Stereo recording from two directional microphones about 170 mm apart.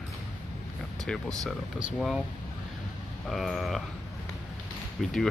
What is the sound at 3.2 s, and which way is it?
Speech, centre (ahead or behind).